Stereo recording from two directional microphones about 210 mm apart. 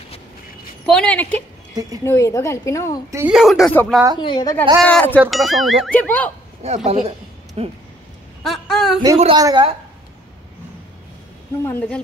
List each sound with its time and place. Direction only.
0.8 s a woman's voice: 5° left (ahead or behind)
3.1 s speech: 10° right (ahead or behind)
3.3 s speech: centre (ahead or behind)
4.2 s a woman's voice: 20° left (ahead or behind)
4.8 s a woman's voice: 5° left (ahead or behind)
6.6 s a man's voice: 30° right (ahead or behind)
8.5 s speech: centre (ahead or behind)
9.2 s a woman's voice: 20° right (ahead or behind)
11.6 s a woman's voice: 5° left (ahead or behind)